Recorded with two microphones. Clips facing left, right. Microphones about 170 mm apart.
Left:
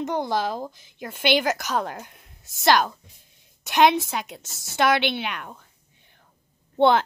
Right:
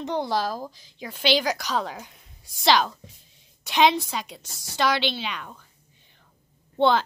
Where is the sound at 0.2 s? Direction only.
20° left (ahead or behind).